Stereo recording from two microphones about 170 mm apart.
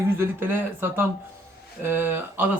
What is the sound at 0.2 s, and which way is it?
Speech, 15° right (ahead or behind).